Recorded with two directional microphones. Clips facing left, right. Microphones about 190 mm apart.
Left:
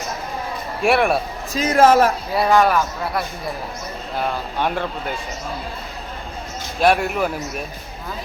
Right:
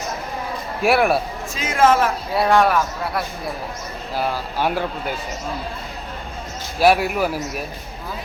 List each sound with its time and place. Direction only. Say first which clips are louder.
0.8 s speech: even; centre (ahead or behind)
1.5 s a man's voice: left 3 dB; 40° left (ahead or behind)
2.3 s speech: right 2 dB; centre (ahead or behind)
6.7 s speech: right 1 dB; 5° right (ahead or behind)